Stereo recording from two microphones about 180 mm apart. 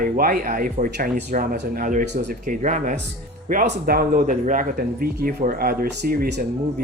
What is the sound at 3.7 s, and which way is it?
Speech, 55° right (ahead or behind).